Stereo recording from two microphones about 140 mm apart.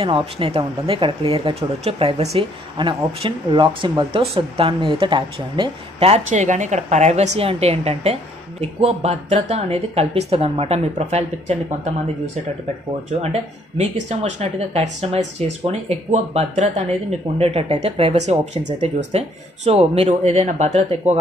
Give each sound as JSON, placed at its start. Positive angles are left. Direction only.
{"t": 0.0, "sound": "speech", "side_deg": -40}
{"t": 13.2, "sound": "speech", "side_deg": -50}